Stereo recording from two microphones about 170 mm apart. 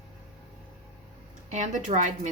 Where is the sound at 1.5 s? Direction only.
45° right (ahead or behind).